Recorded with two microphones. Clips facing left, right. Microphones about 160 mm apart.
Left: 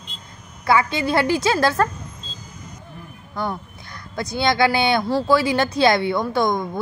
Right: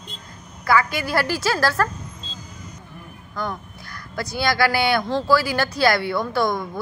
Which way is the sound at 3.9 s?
20° left (ahead or behind).